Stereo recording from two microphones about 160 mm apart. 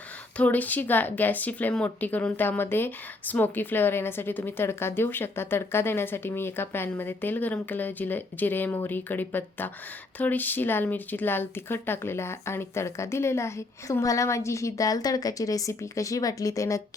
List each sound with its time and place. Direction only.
0.3 s speech: 10° left (ahead or behind)